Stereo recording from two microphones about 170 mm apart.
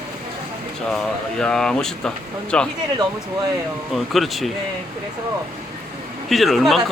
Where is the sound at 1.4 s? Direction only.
5° left (ahead or behind).